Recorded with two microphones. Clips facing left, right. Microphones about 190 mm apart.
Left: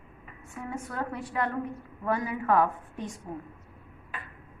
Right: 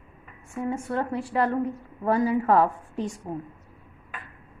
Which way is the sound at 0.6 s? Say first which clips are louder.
Right 7 dB; 30° right (ahead or behind).